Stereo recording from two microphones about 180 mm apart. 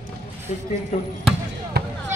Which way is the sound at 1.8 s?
60° right (ahead or behind).